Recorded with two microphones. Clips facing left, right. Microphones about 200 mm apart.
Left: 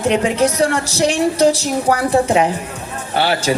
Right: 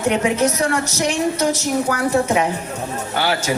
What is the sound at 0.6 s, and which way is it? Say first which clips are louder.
A woman's voice: left 4 dB; 35° left (ahead or behind).